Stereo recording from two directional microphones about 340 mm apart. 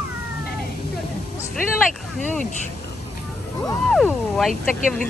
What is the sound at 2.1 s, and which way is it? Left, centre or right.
Speech, centre.